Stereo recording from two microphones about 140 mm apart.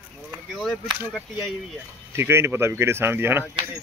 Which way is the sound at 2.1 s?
15° right (ahead or behind).